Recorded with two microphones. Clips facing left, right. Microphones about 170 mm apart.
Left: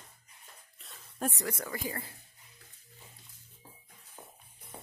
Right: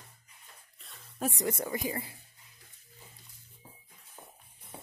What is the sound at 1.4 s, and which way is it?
Speech, 20° right (ahead or behind).